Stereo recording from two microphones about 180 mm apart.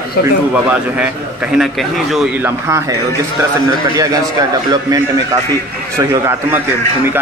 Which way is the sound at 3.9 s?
20° right (ahead or behind).